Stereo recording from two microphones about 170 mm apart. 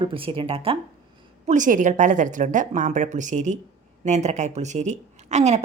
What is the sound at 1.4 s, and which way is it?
A woman's voice, 45° right (ahead or behind).